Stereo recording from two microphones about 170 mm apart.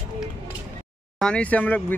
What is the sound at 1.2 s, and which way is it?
Speech, 5° left (ahead or behind).